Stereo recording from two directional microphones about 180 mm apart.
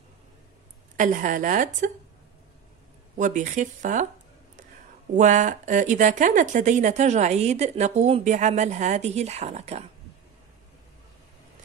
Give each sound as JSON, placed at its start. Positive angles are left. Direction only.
{"t": 0.9, "sound": "speech", "side_deg": -45}
{"t": 3.2, "sound": "speech", "side_deg": -45}
{"t": 5.1, "sound": "speech", "side_deg": -45}